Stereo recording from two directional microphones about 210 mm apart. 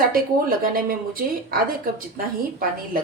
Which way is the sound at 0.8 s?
45° right (ahead or behind).